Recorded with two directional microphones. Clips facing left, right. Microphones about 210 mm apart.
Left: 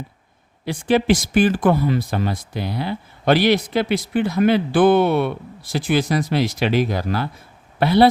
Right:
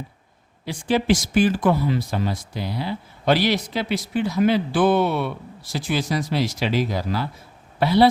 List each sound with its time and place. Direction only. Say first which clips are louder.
0.6 s speech: left 4 dB; 55° left (ahead or behind)